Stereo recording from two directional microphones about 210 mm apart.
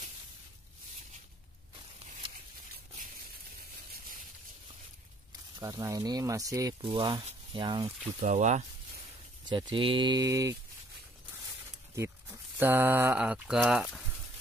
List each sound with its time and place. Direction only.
5.6 s speech: 15° right (ahead or behind)
8.2 s speech: 35° right (ahead or behind)
9.5 s speech: 20° right (ahead or behind)
11.9 s speech: 15° right (ahead or behind)